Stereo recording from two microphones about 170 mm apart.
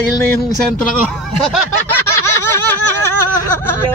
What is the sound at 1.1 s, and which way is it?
Speech, centre (ahead or behind).